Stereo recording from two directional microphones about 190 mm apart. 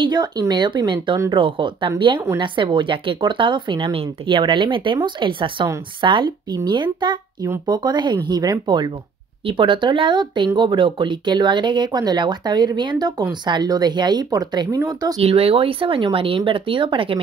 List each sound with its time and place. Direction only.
0.0 s speech: 20° right (ahead or behind)
15.1 s speech: 30° right (ahead or behind)